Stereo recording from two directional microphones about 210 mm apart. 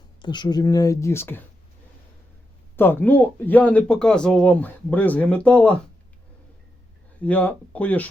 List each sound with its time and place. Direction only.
0.2 s speech: 20° left (ahead or behind)
2.7 s speech: 10° left (ahead or behind)
7.2 s speech: 5° left (ahead or behind)